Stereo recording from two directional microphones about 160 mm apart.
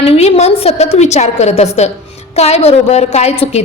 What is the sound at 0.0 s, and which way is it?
A woman's voice, 40° left (ahead or behind).